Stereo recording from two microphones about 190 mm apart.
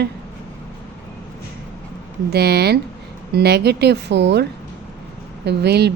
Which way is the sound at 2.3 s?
60° right (ahead or behind).